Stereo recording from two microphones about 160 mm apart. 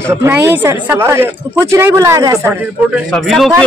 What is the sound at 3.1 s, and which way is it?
Speech, centre (ahead or behind).